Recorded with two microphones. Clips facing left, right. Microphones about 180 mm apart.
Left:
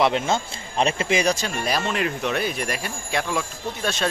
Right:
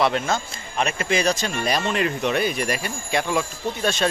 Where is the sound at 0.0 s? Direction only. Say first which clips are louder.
Left 1 dB; 20° left (ahead or behind).